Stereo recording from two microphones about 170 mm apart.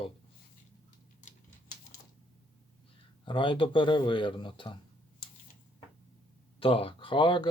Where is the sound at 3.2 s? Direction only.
30° left (ahead or behind).